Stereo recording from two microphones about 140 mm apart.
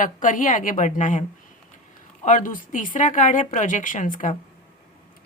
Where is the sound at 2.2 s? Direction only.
70° left (ahead or behind).